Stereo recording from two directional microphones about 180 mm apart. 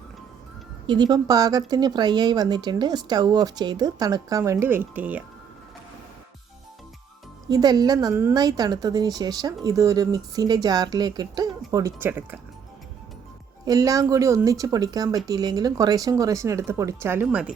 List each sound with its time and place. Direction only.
0.9 s a woman's voice: 25° right (ahead or behind)
7.5 s a woman's voice: 20° right (ahead or behind)
13.7 s speech: 20° right (ahead or behind)